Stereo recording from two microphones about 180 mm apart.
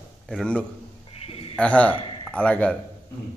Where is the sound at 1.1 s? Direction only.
35° left (ahead or behind).